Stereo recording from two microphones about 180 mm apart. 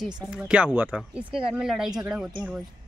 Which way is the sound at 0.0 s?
5° right (ahead or behind).